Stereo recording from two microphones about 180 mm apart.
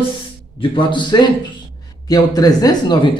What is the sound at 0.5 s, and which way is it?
A man's voice, 30° left (ahead or behind).